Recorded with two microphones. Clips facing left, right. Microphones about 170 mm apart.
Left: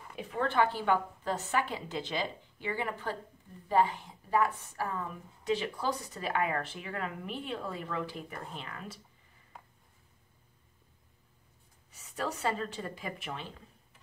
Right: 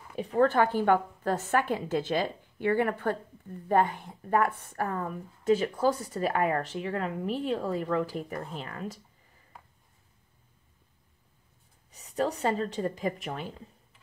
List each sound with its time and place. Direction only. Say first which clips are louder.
0.2 s a woman's voice: right 6 dB; 40° right (ahead or behind)
11.9 s speech: right 7 dB; 35° right (ahead or behind)